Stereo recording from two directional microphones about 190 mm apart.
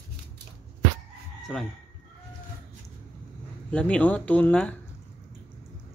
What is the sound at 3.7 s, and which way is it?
Speech, 5° left (ahead or behind).